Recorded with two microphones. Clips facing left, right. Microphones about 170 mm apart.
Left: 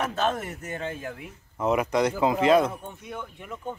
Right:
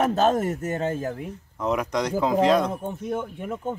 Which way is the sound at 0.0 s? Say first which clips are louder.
Right 6 dB; 40° right (ahead or behind).